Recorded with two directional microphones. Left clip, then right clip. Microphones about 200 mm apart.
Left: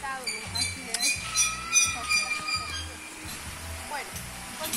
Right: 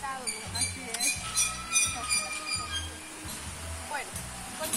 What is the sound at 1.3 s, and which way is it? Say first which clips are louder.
Speech: left 5 dB; 55° right (ahead or behind).